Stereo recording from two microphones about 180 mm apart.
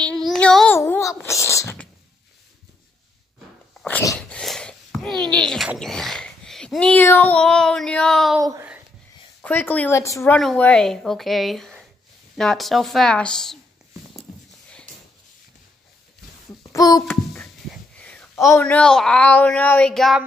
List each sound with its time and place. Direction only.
0.3 s child singing: centre (ahead or behind)
0.7 s babbling: 15° left (ahead or behind)
3.8 s dog: 10° left (ahead or behind)
4.1 s a sound: centre (ahead or behind)
5.8 s speech: centre (ahead or behind)
8.4 s a sound: 20° right (ahead or behind)
9.4 s speech: 10° left (ahead or behind)
10.3 s speech: 5° left (ahead or behind)
16.7 s a child's voice: 20° left (ahead or behind)
17.3 s speech: centre (ahead or behind)